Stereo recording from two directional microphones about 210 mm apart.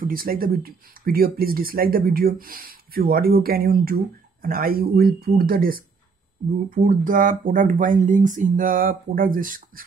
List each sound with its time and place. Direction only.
0.0 s speech: 45° right (ahead or behind)